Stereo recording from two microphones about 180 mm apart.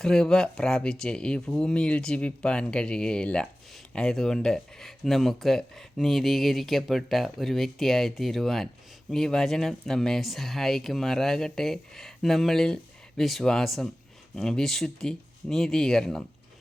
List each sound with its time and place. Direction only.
0.0 s speech: 5° left (ahead or behind)